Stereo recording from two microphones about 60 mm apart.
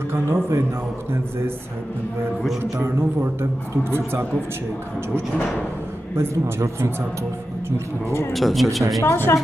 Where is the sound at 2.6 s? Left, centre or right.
Right.